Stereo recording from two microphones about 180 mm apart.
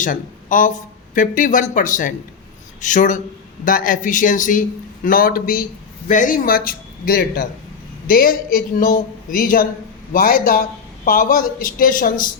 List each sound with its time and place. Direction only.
0.0 s speech: 45° left (ahead or behind)